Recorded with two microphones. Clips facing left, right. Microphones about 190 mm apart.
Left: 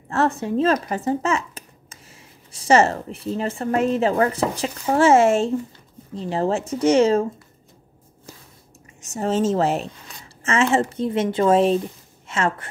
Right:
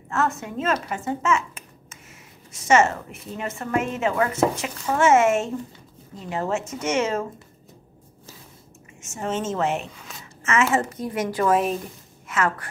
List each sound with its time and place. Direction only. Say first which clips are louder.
0.1 s a woman's voice: left 5 dB; 30° left (ahead or behind)
0.8 s a sound: left 2 dB; 35° left (ahead or behind)
2.5 s a woman's voice: left 2 dB; 35° left (ahead or behind)
9.0 s a woman's voice: left 6 dB; 35° left (ahead or behind)